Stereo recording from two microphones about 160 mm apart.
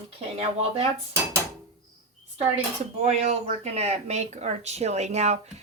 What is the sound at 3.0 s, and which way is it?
Speech, 45° right (ahead or behind).